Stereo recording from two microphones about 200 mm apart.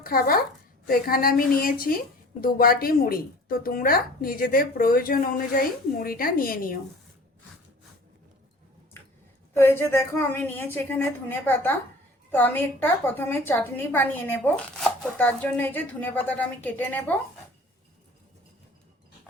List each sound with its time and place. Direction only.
0.0 s speech: 45° left (ahead or behind)
9.6 s a woman's voice: 10° left (ahead or behind)